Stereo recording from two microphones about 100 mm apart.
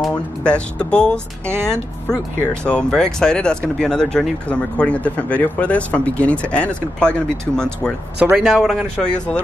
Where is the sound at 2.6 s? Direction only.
10° left (ahead or behind).